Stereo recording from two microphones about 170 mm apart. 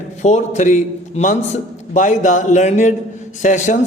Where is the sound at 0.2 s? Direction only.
45° left (ahead or behind).